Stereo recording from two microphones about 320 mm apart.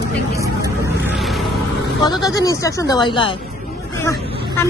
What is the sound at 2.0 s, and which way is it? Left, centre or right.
Speech, centre.